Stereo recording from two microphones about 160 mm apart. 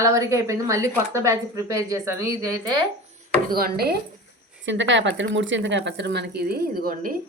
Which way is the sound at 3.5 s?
75° right (ahead or behind).